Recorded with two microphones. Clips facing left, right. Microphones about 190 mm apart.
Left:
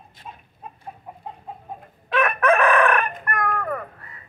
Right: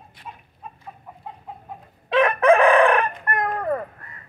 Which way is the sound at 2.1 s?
25° right (ahead or behind).